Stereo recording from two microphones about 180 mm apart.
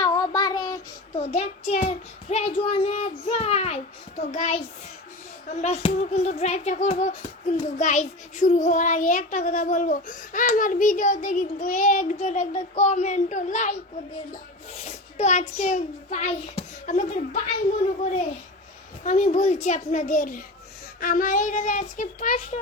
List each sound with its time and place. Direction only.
0.0 s child singing: 20° left (ahead or behind)
1.2 s a child's voice: 35° left (ahead or behind)
14.8 s a child's voice: 40° left (ahead or behind)
19.0 s a child's voice: 40° left (ahead or behind)